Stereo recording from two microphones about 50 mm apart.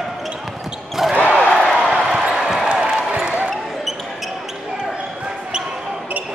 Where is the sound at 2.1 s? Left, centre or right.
Centre.